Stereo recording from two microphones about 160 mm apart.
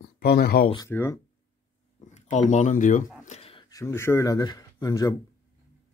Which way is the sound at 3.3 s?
35° left (ahead or behind).